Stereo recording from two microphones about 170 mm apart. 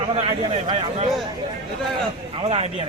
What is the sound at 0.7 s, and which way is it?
Speech, 30° right (ahead or behind).